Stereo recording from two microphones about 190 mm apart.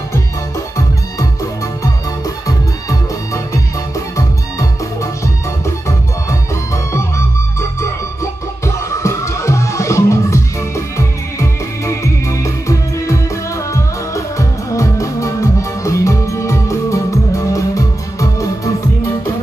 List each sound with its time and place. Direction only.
3.9 s music: 15° left (ahead or behind)
6.7 s music: 15° left (ahead or behind)